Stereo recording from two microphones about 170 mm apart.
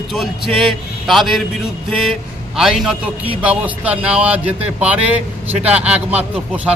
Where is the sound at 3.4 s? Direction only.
10° right (ahead or behind).